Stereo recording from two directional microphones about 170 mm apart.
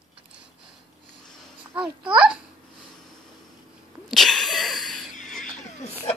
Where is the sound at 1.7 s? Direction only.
5° right (ahead or behind).